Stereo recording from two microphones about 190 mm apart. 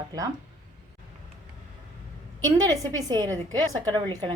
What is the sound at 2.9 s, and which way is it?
A woman's voice, 20° right (ahead or behind).